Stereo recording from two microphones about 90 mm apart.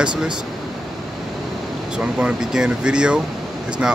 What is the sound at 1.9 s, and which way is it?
Speech, 5° right (ahead or behind).